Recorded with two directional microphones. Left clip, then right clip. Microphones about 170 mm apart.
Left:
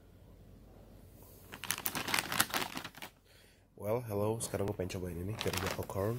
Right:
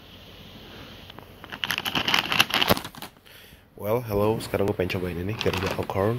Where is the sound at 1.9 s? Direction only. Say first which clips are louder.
Right 12 dB; 15° left (ahead or behind).